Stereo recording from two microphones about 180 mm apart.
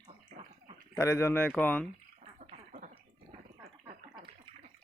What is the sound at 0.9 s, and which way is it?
Speech, 15° left (ahead or behind).